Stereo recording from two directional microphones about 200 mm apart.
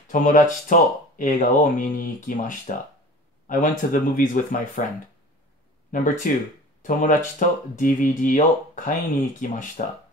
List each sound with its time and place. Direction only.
0.1 s speech: 40° left (ahead or behind)
5.9 s speech: 40° left (ahead or behind)